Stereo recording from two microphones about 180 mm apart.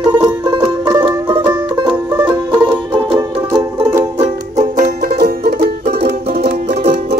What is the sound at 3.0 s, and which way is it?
Music, 25° right (ahead or behind).